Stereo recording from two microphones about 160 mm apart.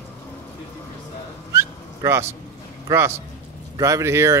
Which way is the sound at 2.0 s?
15° right (ahead or behind).